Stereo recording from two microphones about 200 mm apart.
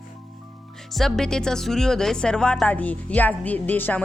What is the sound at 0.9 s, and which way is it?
Speech, centre (ahead or behind).